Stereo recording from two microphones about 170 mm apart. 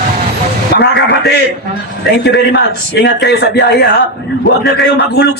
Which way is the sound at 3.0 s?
80° left.